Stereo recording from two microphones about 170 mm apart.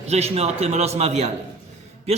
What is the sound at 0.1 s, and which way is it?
A man's voice, 40° right (ahead or behind).